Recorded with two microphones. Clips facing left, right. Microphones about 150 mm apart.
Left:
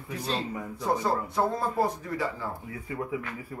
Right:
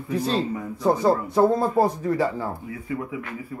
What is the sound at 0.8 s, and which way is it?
Speech, 35° right (ahead or behind).